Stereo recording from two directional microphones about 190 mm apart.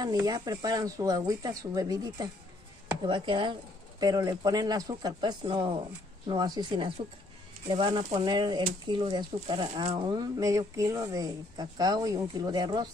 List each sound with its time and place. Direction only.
0.0 s speech: 20° right (ahead or behind)